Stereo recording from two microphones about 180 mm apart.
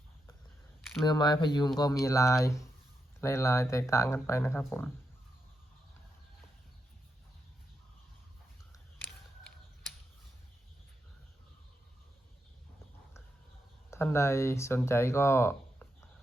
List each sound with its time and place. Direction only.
1.0 s speech: 25° left (ahead or behind)
13.9 s speech: 15° left (ahead or behind)